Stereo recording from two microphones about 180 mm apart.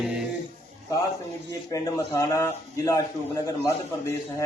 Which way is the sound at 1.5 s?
15° left (ahead or behind).